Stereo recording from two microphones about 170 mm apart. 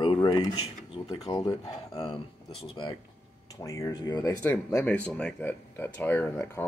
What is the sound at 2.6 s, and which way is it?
Speech, 30° left (ahead or behind).